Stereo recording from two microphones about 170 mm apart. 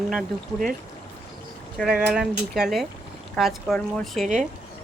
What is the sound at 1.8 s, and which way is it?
Speech, 5° right (ahead or behind).